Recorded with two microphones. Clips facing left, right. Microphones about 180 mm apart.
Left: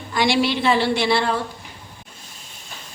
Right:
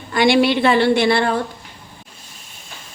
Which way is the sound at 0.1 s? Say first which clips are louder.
Right 5 dB; 55° right (ahead or behind).